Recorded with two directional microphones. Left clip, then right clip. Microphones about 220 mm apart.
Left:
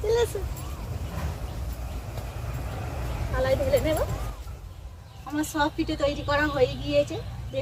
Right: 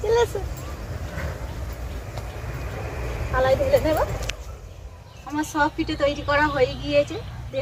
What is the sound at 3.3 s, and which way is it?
Speech, centre (ahead or behind).